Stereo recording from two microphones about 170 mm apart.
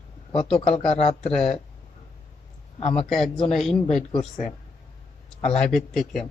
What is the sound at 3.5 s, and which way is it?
Speech, centre (ahead or behind).